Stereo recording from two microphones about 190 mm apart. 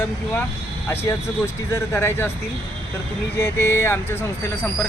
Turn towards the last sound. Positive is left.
turn(degrees=10)  # may be behind; listen again after turning